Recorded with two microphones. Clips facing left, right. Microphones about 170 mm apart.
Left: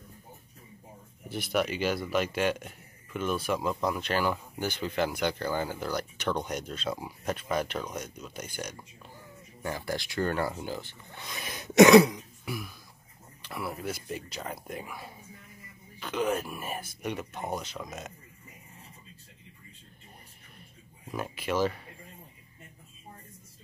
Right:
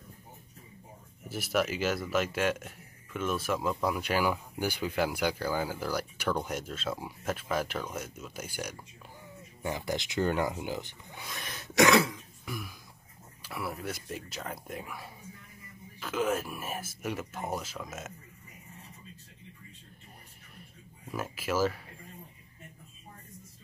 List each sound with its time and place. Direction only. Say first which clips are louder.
1.3 s a man's voice: left 1 dB; 5° right (ahead or behind)
9.6 s speech: even; 20° right (ahead or behind)
11.2 s throat clearing: left 2 dB; centre (ahead or behind)
11.5 s throat clearing: left 7 dB; 20° left (ahead or behind)
13.4 s a man's voice: left 1 dB; centre (ahead or behind)
21.1 s a man's voice: left 1 dB; 5° right (ahead or behind)